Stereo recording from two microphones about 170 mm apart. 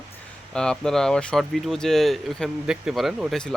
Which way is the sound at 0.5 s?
5° left (ahead or behind).